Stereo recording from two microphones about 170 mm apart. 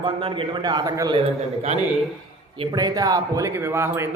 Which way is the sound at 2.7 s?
20° right (ahead or behind).